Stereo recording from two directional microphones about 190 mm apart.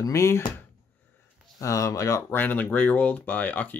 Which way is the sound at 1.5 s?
15° left (ahead or behind).